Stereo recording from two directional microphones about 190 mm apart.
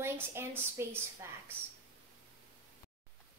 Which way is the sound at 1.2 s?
15° right (ahead or behind).